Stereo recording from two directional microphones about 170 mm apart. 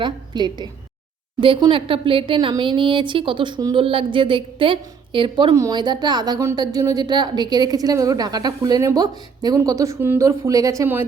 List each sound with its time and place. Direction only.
0.0 s speech: 25° right (ahead or behind)